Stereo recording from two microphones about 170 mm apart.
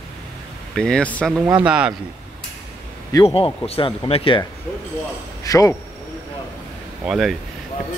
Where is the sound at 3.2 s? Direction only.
35° left (ahead or behind).